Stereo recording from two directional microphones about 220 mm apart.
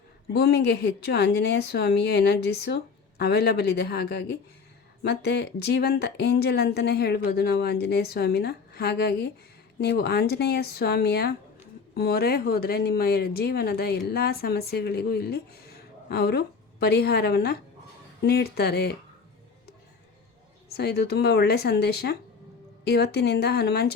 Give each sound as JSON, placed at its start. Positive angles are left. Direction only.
{"t": 0.3, "sound": "speech", "side_deg": 50}
{"t": 20.7, "sound": "speech", "side_deg": 45}